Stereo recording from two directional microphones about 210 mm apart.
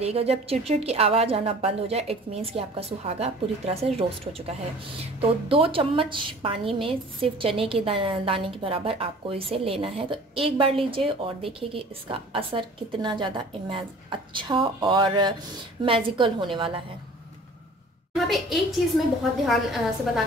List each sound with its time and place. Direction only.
0.0 s a woman's voice: 30° right (ahead or behind)
5.2 s a woman's voice: 25° right (ahead or behind)
18.1 s a woman's voice: centre (ahead or behind)